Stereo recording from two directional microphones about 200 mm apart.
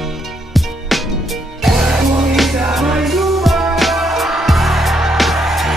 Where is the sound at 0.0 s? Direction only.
Centre (ahead or behind).